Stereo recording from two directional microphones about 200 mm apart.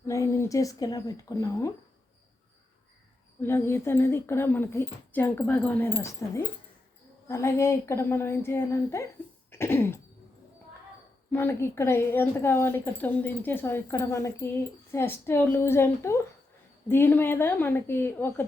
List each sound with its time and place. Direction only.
0.0 s a woman's voice: 15° left (ahead or behind)
3.4 s a woman's voice: 10° left (ahead or behind)
9.5 s cough: 10° left (ahead or behind)
11.3 s a woman's voice: 10° left (ahead or behind)